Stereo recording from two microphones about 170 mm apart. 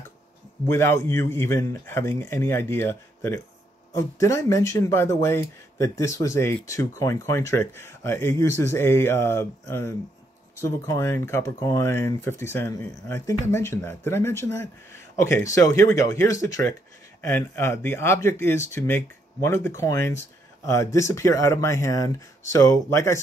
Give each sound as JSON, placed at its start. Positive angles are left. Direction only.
{"t": 0.7, "sound": "speech", "side_deg": 15}